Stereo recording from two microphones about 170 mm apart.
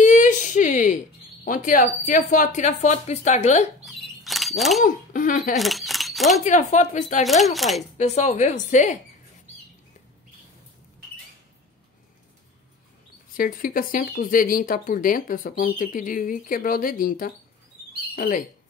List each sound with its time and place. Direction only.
0.0 s a woman's voice: 45° left (ahead or behind)
3.8 s bird: centre (ahead or behind)
4.8 s a woman's voice: 50° left (ahead or behind)
5.6 s speech: centre (ahead or behind)
6.4 s a woman's voice: 45° left (ahead or behind)
7.2 s speech: centre (ahead or behind)
8.0 s a woman's voice: 40° left (ahead or behind)
13.3 s speech: 55° left (ahead or behind)